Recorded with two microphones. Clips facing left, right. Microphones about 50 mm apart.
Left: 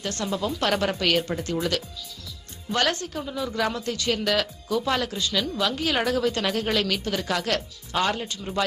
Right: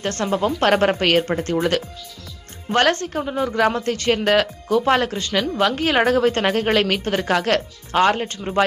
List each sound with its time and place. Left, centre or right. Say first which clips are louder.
0.0 s speech: right 7 dB; right